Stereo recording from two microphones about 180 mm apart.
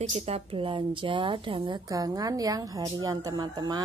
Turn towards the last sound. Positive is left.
turn(degrees=-25)  # may be behind; listen again after turning